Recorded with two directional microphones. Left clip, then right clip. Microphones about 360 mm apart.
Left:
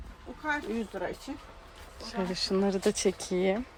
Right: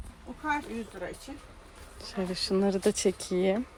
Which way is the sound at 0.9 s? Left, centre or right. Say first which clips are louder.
Left 4 dB; centre.